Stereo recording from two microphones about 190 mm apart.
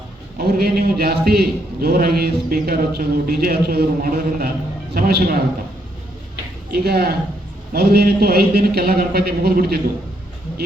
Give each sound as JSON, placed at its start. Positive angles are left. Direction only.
{"t": 0.3, "sound": "a man's voice", "side_deg": -50}
{"t": 6.7, "sound": "a man's voice", "side_deg": -55}